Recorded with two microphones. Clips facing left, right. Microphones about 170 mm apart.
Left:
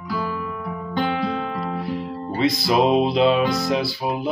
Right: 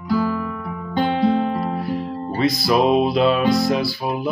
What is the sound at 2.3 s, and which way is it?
Mantra, 20° left (ahead or behind).